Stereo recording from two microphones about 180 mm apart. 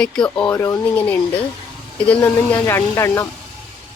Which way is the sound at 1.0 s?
10° left (ahead or behind).